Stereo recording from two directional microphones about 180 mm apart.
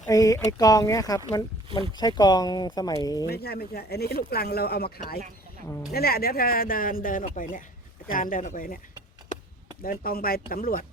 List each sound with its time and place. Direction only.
0.1 s speech: 20° left (ahead or behind)
3.2 s speech: 60° left (ahead or behind)
9.8 s speech: 55° left (ahead or behind)